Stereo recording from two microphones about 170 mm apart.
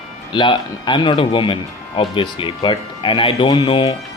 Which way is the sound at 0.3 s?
25° left (ahead or behind).